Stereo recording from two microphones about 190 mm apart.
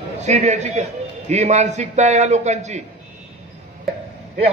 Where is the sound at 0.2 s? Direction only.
35° right (ahead or behind).